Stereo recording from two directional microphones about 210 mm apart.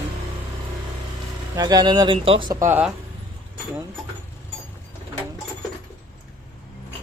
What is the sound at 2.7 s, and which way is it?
Speech, 5° right (ahead or behind).